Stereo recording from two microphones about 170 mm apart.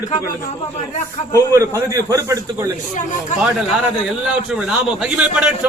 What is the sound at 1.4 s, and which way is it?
A man's voice, 15° right (ahead or behind).